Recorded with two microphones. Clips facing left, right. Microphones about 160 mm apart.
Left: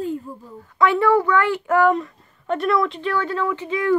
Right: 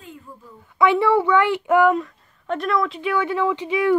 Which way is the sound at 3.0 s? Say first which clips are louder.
Right 1 dB; 10° right (ahead or behind).